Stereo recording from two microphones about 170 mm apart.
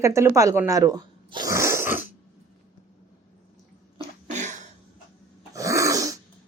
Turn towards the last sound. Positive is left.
turn(degrees=-20)  # may be behind; listen again after turning